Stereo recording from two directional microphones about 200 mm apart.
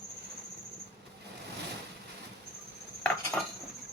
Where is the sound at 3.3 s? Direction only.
5° left (ahead or behind).